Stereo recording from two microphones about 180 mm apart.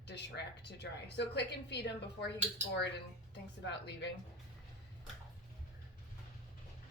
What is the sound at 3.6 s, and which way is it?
Speech, 70° left (ahead or behind).